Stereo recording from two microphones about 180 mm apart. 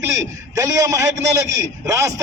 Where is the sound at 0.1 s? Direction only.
20° right (ahead or behind).